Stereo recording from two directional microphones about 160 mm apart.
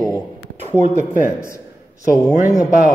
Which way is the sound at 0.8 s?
50° right (ahead or behind).